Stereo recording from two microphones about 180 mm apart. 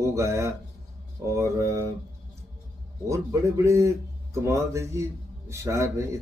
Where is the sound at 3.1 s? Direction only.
15° right (ahead or behind).